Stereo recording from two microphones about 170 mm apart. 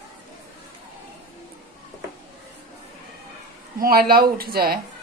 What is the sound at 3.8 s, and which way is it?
Speech, 60° right (ahead or behind).